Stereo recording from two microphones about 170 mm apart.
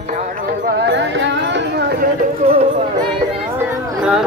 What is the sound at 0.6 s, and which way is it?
Music, 90° right.